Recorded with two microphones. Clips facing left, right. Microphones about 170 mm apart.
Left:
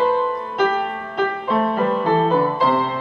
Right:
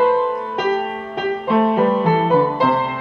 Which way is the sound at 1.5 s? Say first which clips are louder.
Right 6 dB; 10° right (ahead or behind).